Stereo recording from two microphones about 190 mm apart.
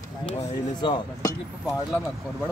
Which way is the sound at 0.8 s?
20° left (ahead or behind).